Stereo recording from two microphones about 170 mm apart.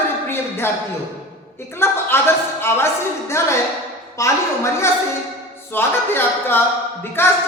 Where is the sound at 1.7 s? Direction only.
15° left (ahead or behind).